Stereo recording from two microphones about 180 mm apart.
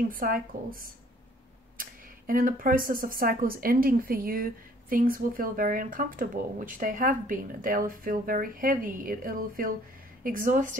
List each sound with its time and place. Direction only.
0.1 s speech: 50° right (ahead or behind)